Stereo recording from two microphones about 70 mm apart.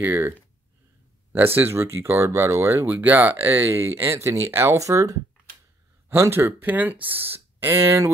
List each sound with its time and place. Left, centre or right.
0.0 s speech: right
1.3 s speech: right
2.7 s speech: right
4.7 s speech: right
6.0 s speech: right
6.6 s speech: right